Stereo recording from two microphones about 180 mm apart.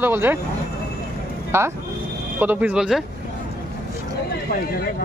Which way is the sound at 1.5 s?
15° right (ahead or behind).